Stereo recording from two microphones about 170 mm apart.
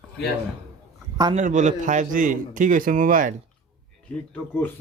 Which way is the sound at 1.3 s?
45° right (ahead or behind).